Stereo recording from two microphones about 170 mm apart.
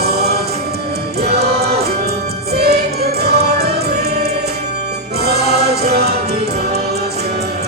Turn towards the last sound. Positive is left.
turn(degrees=-70)  # may be behind; listen again after turning